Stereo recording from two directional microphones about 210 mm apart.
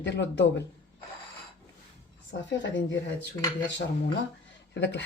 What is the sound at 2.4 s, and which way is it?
Speech, 60° left (ahead or behind).